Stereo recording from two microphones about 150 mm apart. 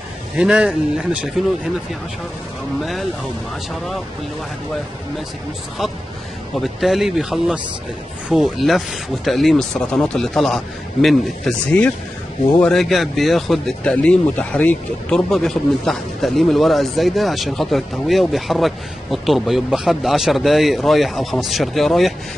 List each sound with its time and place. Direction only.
0.4 s speech: 5° right (ahead or behind)
2.8 s speech: centre (ahead or behind)
6.8 s speech: centre (ahead or behind)